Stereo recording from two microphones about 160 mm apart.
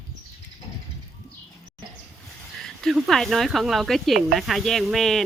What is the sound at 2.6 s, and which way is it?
Speech, centre (ahead or behind).